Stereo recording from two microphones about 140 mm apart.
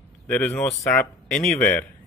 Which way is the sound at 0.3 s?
15° left (ahead or behind).